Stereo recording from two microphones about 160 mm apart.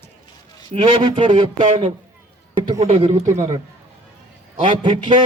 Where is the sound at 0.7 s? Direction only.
30° right (ahead or behind).